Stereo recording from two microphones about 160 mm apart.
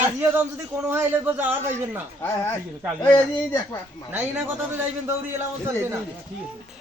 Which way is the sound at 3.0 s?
20° left (ahead or behind).